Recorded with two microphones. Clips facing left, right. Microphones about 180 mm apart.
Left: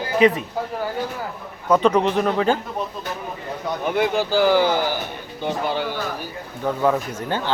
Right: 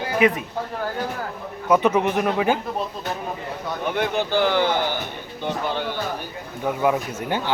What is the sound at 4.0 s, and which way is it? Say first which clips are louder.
Speech: left 3 dB; 5° left (ahead or behind).